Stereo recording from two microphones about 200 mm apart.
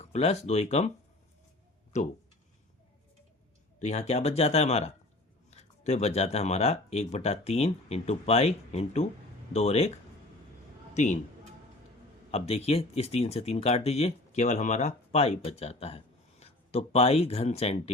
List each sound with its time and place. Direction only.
0.0 s speech: 35° left (ahead or behind)
1.9 s speech: 35° left (ahead or behind)
3.8 s speech: 35° left (ahead or behind)
10.9 s a man's voice: 35° left (ahead or behind)
12.3 s speech: 30° left (ahead or behind)